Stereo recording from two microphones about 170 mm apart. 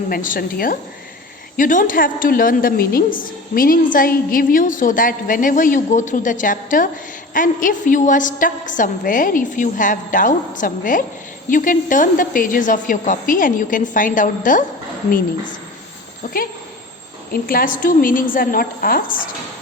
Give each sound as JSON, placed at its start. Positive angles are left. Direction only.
{"t": 0.1, "sound": "a woman's voice", "side_deg": 55}
{"t": 16.2, "sound": "a woman's voice", "side_deg": 50}